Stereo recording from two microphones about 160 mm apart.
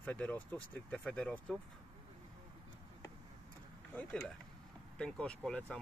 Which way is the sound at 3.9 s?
10° left (ahead or behind).